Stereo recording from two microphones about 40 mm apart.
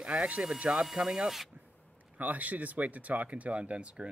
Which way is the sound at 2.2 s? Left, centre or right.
Right.